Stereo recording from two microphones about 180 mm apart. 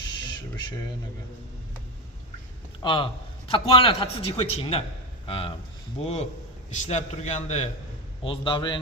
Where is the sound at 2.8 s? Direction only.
25° left (ahead or behind).